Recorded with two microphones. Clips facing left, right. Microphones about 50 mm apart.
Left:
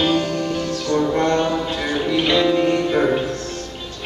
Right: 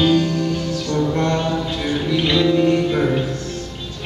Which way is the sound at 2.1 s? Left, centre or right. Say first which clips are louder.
Even; centre.